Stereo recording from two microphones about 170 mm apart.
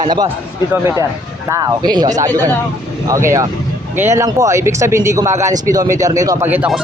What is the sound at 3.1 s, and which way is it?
Speech, 15° right (ahead or behind).